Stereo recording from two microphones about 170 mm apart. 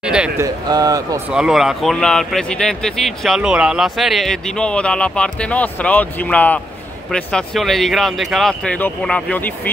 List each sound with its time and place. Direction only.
0.0 s speech: 5° right (ahead or behind)
0.4 s speech: 20° right (ahead or behind)
1.3 s speech: 5° right (ahead or behind)